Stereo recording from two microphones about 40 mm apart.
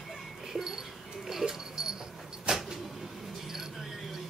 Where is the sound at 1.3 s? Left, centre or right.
Centre.